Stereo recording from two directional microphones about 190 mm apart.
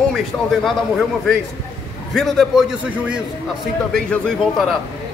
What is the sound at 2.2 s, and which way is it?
Speech, centre (ahead or behind).